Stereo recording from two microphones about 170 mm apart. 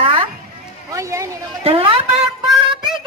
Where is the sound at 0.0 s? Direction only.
30° right (ahead or behind).